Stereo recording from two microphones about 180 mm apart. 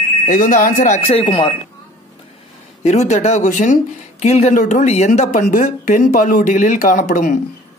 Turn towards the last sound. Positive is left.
turn(degrees=45)  # may be behind; listen again after turning